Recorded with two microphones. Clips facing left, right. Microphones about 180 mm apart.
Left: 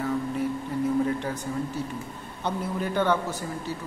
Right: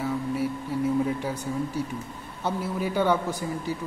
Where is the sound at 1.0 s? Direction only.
10° right (ahead or behind).